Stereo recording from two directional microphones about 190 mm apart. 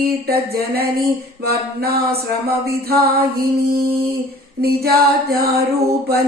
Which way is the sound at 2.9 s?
55° right (ahead or behind).